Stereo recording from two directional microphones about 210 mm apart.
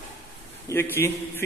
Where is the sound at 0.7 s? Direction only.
10° left (ahead or behind).